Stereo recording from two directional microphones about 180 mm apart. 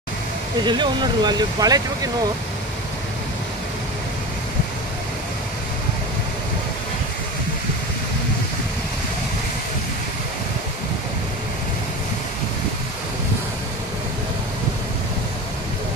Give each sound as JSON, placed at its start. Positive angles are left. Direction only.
{"t": 0.7, "sound": "speech", "side_deg": -25}